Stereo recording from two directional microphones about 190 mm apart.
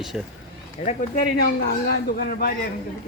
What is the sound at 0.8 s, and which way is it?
Speech, 50° left (ahead or behind).